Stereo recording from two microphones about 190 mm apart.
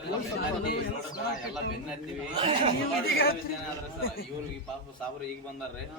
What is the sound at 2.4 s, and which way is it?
Speech, 35° right (ahead or behind).